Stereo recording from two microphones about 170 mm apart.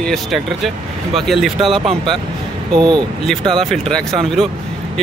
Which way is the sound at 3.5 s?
Centre (ahead or behind).